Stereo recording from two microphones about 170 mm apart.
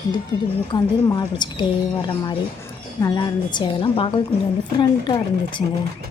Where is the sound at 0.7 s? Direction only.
25° left (ahead or behind).